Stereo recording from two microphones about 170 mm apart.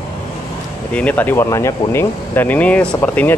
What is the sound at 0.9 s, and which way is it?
Speech, 10° left (ahead or behind).